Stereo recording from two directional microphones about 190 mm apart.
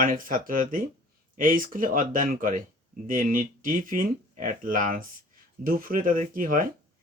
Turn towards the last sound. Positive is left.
turn(degrees=-45)  # may be behind; listen again after turning